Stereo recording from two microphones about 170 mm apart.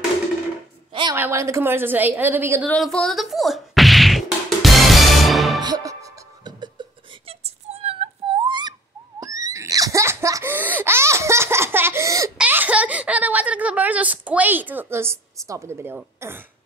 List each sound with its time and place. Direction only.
1.1 s a woman's voice: 15° right (ahead or behind)
2.6 s whack: 5° left (ahead or behind)
5.6 s music: 20° right (ahead or behind)
9.2 s laughter: 20° right (ahead or behind)
12.4 s baby laughter: 10° right (ahead or behind)